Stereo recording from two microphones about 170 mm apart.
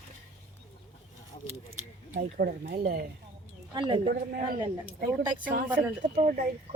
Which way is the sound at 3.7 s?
25° right (ahead or behind).